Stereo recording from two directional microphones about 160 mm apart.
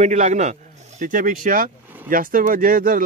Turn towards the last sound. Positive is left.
turn(degrees=-60)  # may be behind; listen again after turning